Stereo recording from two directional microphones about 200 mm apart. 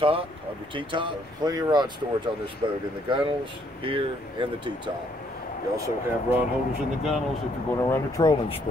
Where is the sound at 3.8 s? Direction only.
25° right (ahead or behind).